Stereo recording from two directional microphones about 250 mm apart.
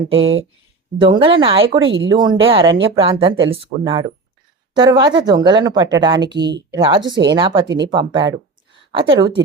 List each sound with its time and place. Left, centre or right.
0.1 s speech: right
0.9 s speech: centre
1.8 s speech: right
2.0 s speech: centre